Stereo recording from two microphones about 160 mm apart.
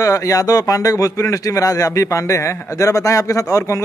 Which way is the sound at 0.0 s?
20° left (ahead or behind).